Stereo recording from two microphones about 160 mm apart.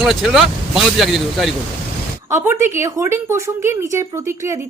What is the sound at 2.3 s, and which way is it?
A woman's voice, 15° right (ahead or behind).